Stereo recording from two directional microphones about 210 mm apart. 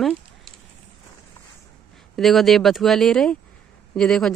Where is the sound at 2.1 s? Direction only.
Centre (ahead or behind).